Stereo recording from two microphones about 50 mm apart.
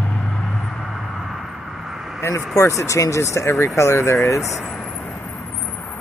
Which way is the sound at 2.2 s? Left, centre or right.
Left.